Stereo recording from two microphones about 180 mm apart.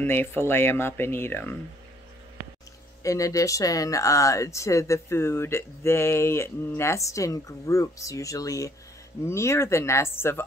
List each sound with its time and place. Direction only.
0.0 s speech: 10° left (ahead or behind)
3.0 s speech: 20° left (ahead or behind)